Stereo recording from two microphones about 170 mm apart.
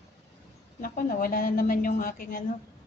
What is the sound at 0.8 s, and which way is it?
A woman's voice, 55° left (ahead or behind).